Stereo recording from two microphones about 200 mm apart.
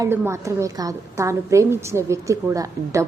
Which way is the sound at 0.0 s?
15° right (ahead or behind).